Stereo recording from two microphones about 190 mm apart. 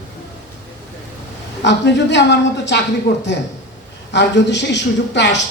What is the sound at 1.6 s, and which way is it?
A man's voice, 70° left (ahead or behind).